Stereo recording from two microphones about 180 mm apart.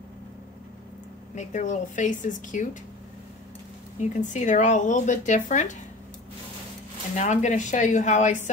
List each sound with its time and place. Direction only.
1.3 s speech: 40° left (ahead or behind)
4.0 s speech: 40° left (ahead or behind)
7.2 s speech: 40° left (ahead or behind)